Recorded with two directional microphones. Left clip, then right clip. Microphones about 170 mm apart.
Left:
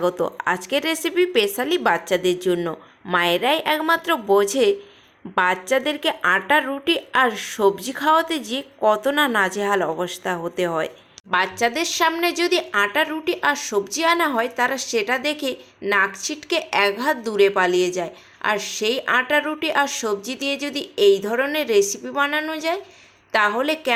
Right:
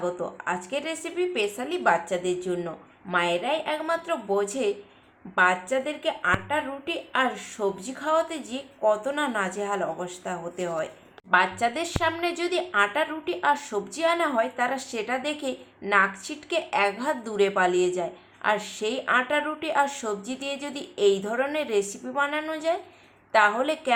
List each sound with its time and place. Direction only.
0.0 s speech: 45° left (ahead or behind)
11.3 s a woman's voice: 35° left (ahead or behind)